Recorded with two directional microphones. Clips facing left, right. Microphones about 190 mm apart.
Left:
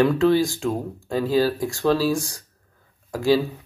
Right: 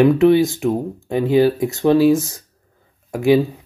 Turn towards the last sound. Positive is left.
turn(degrees=-20)  # may be behind; listen again after turning